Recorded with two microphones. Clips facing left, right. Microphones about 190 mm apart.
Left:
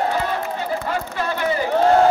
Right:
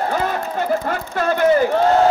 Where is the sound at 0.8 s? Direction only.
50° right (ahead or behind).